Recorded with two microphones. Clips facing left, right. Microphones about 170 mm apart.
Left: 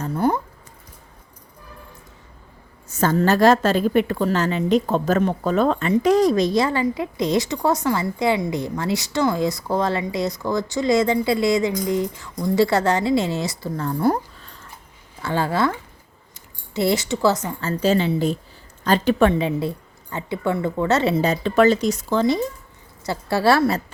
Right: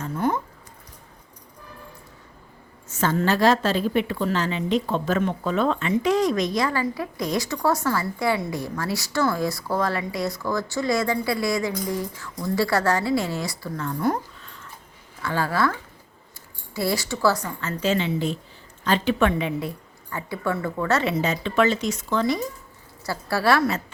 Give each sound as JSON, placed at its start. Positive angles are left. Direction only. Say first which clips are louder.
{"t": 0.0, "sound": "a sound", "louder": "left 4 dB", "side_deg": 35}
{"t": 2.9, "sound": "a woman's voice", "louder": "left 4 dB", "side_deg": 40}
{"t": 13.7, "sound": "a sound", "louder": "left 4 dB", "side_deg": 35}
{"t": 15.2, "sound": "a woman's voice", "louder": "left 2 dB", "side_deg": 25}
{"t": 17.6, "sound": "a woman's voice", "louder": "left 4 dB", "side_deg": 35}
{"t": 22.2, "sound": "a woman's voice", "louder": "left 4 dB", "side_deg": 25}